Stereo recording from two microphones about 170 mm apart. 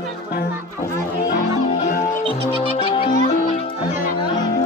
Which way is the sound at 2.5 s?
30° left (ahead or behind).